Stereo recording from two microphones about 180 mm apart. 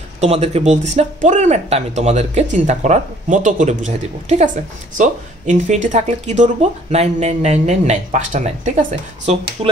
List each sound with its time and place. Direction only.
0.2 s speech: 35° right (ahead or behind)
9.6 s speech: 35° right (ahead or behind)